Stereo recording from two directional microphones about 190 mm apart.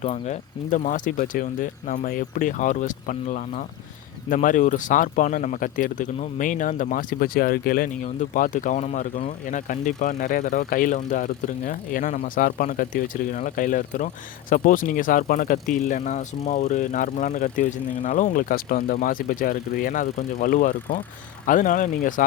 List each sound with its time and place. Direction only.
0.0 s speech: 35° left (ahead or behind)